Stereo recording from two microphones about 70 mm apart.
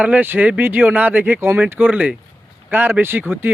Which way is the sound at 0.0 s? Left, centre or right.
Right.